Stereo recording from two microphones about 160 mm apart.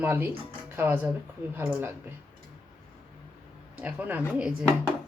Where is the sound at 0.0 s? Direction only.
15° right (ahead or behind).